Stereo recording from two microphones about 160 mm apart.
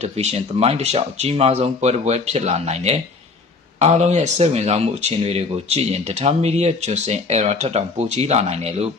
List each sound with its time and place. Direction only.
0.0 s speech: 40° right (ahead or behind)